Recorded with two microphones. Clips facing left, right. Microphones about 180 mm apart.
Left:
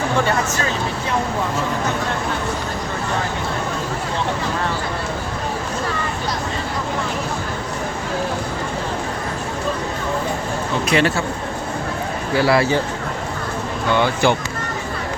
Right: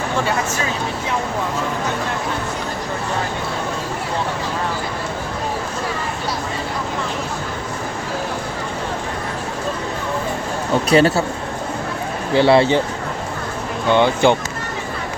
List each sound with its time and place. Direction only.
10.8 s speech: 35° right (ahead or behind)
12.3 s speech: 25° right (ahead or behind)
13.9 s speech: 20° right (ahead or behind)